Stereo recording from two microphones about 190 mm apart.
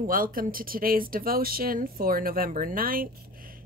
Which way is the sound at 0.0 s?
50° right (ahead or behind).